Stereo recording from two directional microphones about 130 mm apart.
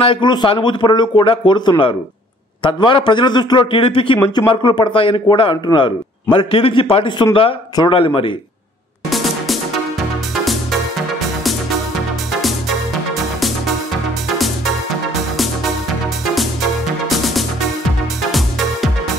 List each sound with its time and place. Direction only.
0.0 s speech: 40° left (ahead or behind)
10.3 s music: centre (ahead or behind)
12.3 s music: centre (ahead or behind)
17.2 s music: centre (ahead or behind)